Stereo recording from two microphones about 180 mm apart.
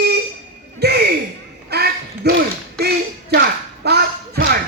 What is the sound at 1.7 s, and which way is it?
Duck, 65° right (ahead or behind).